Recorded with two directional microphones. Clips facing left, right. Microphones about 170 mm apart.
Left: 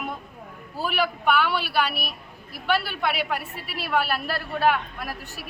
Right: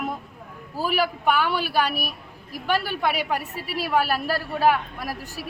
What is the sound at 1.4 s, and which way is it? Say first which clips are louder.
A woman's voice: right 1 dB; 40° right (ahead or behind).